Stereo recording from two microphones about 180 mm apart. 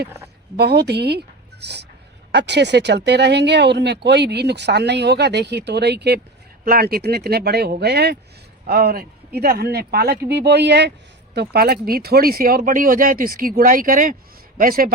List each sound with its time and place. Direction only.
0.5 s speech: 65° right (ahead or behind)
6.7 s speech: 55° right (ahead or behind)
11.3 s speech: 60° right (ahead or behind)